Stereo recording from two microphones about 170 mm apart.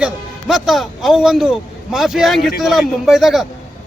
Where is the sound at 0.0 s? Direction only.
Centre (ahead or behind).